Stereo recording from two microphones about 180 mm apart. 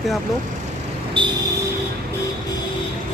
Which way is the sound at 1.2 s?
25° right (ahead or behind).